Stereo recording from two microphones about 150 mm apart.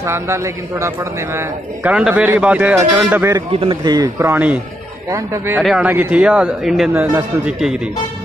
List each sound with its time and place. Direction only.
0.0 s a man's voice: 20° right (ahead or behind)
3.5 s a man's voice: 30° right (ahead or behind)
4.3 s a man's voice: 10° right (ahead or behind)
5.1 s a man's voice: 20° right (ahead or behind); by 6.9 s centre (ahead or behind)
6.9 s a man's voice: 15° right (ahead or behind)